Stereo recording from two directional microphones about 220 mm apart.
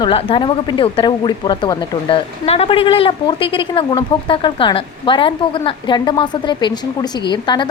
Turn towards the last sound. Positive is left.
turn(degrees=20)  # may be behind; listen again after turning